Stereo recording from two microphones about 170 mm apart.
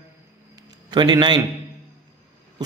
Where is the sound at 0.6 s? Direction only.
25° right (ahead or behind).